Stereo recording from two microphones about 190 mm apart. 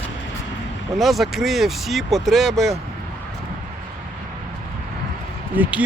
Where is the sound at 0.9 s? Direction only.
Centre (ahead or behind).